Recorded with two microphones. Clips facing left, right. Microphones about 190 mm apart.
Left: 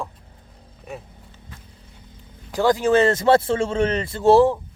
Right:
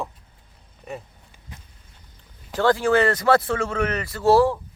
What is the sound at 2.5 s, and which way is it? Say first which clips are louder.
Speech: left 2 dB; 15° left (ahead or behind).